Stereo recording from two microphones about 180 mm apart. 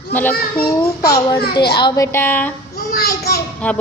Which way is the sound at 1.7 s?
20° left (ahead or behind).